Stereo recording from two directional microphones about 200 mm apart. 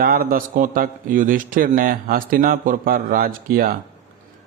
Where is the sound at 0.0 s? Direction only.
45° right (ahead or behind).